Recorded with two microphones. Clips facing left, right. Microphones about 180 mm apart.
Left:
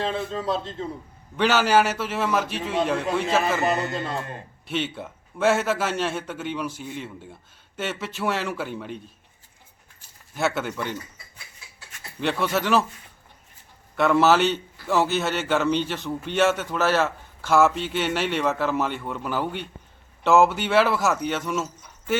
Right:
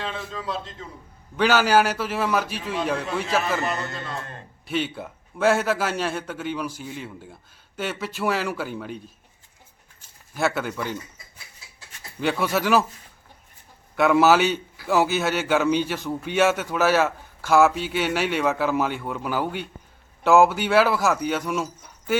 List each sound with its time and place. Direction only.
0.0 s a man's voice: 30° left (ahead or behind)
1.4 s a man's voice: centre (ahead or behind)
4.6 s a man's voice: centre (ahead or behind)
10.3 s a man's voice: centre (ahead or behind)
12.2 s a man's voice: 5° right (ahead or behind)
13.9 s a man's voice: 10° right (ahead or behind)